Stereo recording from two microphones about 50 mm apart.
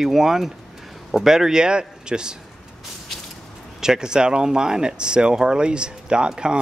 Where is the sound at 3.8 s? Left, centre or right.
Centre.